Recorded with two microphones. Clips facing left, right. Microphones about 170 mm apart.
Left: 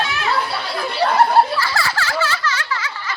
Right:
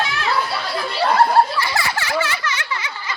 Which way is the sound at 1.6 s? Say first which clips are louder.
Left 1 dB; 20° right (ahead or behind).